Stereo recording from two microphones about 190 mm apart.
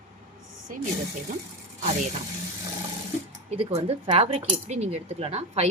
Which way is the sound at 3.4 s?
30° right (ahead or behind).